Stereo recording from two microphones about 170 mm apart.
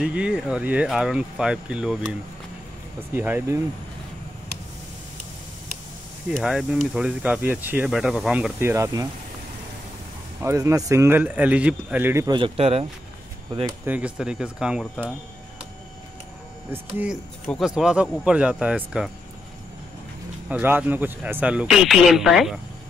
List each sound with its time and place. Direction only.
0.0 s speech: 5° right (ahead or behind)
3.2 s a man's voice: 10° right (ahead or behind)
6.3 s a man's voice: 5° right (ahead or behind)
10.4 s a man's voice: 15° right (ahead or behind)
12.4 s speech: 35° right (ahead or behind)
13.8 s speech: 10° right (ahead or behind)
16.7 s a man's voice: 10° right (ahead or behind)
20.4 s a man's voice: 10° right (ahead or behind)